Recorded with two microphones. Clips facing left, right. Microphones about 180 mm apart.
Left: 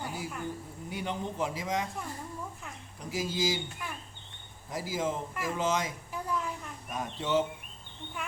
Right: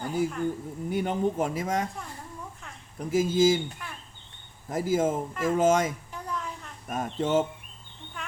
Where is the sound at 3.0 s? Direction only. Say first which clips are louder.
Right 10 dB; 50° right (ahead or behind).